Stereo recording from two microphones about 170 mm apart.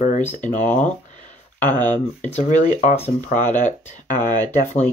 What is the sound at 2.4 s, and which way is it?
Speech, 45° left (ahead or behind).